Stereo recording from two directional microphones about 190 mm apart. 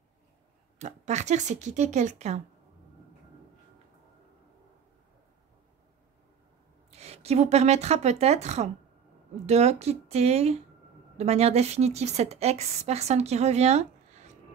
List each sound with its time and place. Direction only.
0.7 s a woman's voice: 40° right (ahead or behind)
6.9 s a woman's voice: 35° right (ahead or behind)